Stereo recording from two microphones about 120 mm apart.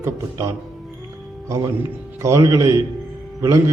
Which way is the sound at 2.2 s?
25° right (ahead or behind).